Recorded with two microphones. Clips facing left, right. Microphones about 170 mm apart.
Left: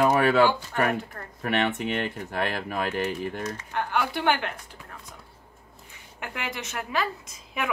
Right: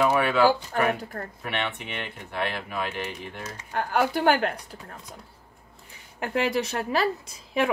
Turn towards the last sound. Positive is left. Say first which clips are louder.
# right 6 dB
turn(degrees=-30)  # may be behind; listen again after turning